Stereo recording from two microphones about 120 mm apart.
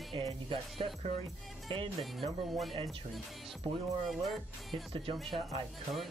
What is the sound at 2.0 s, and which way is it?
Speech, centre (ahead or behind).